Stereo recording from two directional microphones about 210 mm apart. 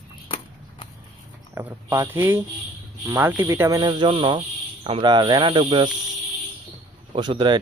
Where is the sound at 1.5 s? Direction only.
10° right (ahead or behind).